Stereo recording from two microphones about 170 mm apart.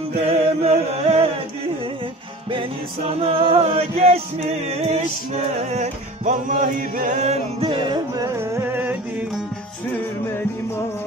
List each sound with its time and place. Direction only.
0.3 s chant: 35° right (ahead or behind)
2.5 s music: 35° right (ahead or behind)
8.5 s music: 10° right (ahead or behind)